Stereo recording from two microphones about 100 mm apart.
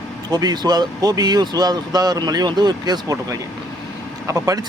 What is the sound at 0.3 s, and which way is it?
A man's voice, 40° right (ahead or behind).